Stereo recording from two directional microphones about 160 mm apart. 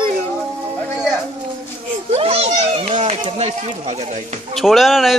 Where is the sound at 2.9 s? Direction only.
50° right (ahead or behind).